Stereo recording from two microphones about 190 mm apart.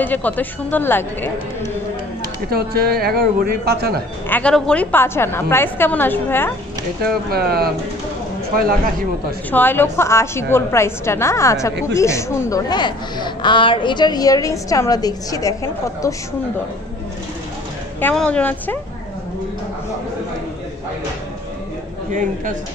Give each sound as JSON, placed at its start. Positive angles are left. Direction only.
{"t": 0.0, "sound": "a woman's voice", "side_deg": 10}
{"t": 2.5, "sound": "a man's voice", "side_deg": -55}
{"t": 4.3, "sound": "a woman's voice", "side_deg": 5}
{"t": 7.2, "sound": "speech", "side_deg": -55}
{"t": 9.5, "sound": "a woman's voice", "side_deg": 10}
{"t": 18.0, "sound": "a woman's voice", "side_deg": 5}
{"t": 22.1, "sound": "speech", "side_deg": -45}